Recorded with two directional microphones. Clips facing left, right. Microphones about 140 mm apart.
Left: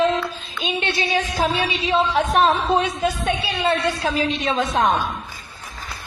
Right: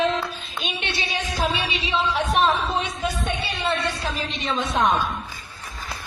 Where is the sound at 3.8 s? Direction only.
50° left (ahead or behind).